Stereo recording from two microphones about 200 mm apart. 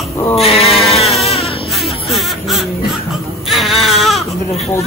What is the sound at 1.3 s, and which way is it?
Baby cry, 30° left (ahead or behind).